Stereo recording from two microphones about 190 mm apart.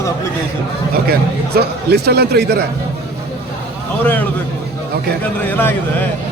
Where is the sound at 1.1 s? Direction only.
55° right (ahead or behind).